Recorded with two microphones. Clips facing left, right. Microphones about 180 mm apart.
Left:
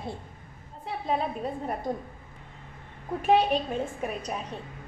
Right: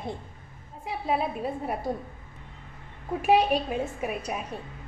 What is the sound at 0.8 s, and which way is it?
A woman's voice, 10° right (ahead or behind).